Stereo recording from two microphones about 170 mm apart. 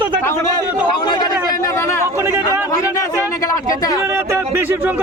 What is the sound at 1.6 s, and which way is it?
Speech, 15° left (ahead or behind).